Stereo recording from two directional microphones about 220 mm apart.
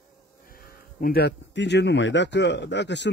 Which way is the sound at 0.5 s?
40° left (ahead or behind).